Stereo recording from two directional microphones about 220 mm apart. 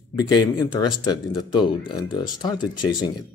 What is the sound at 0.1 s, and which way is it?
Speech, 15° left (ahead or behind).